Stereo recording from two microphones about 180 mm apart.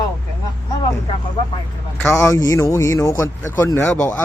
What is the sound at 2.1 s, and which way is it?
Speech, 20° left (ahead or behind).